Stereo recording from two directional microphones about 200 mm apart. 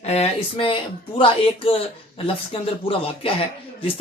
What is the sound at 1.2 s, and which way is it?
Speech, 30° left (ahead or behind).